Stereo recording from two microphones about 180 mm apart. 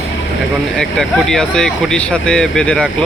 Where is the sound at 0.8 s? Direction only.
5° left (ahead or behind).